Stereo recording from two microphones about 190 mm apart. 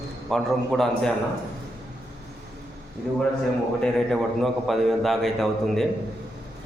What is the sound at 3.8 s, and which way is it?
A man's voice, centre (ahead or behind).